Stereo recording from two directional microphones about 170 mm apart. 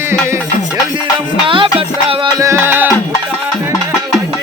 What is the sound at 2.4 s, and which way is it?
Music, 15° right (ahead or behind).